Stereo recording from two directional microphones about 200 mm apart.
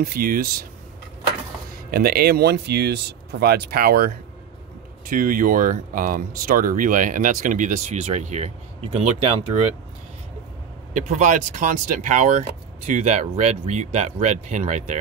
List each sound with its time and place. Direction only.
0.0 s speech: 45° right (ahead or behind)
1.9 s speech: 50° right (ahead or behind)
5.1 s speech: 45° right (ahead or behind)
10.9 s speech: 40° right (ahead or behind)